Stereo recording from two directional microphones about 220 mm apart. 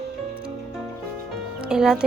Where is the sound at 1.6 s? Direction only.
5° right (ahead or behind).